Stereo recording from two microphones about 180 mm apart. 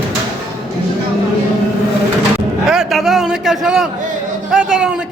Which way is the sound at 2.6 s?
Centre (ahead or behind).